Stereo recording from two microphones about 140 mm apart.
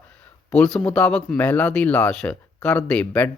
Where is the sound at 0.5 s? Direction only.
5° left (ahead or behind).